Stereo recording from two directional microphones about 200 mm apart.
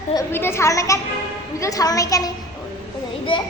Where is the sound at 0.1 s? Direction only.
15° left (ahead or behind).